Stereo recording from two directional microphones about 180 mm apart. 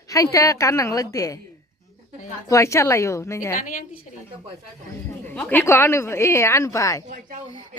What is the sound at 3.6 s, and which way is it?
Speech, 50° left (ahead or behind).